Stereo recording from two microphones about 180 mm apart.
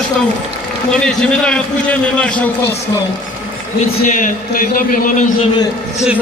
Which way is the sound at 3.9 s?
45° left (ahead or behind).